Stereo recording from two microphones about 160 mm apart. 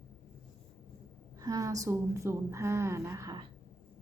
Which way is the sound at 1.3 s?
20° right (ahead or behind).